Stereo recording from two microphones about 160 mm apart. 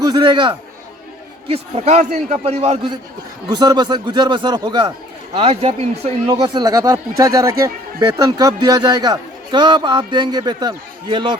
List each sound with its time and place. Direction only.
0.1 s a man's voice: 25° right (ahead or behind)
3.5 s a man's voice: 25° right (ahead or behind)
5.3 s a man's voice: 40° right (ahead or behind)
6.2 s a man's voice: 25° right (ahead or behind)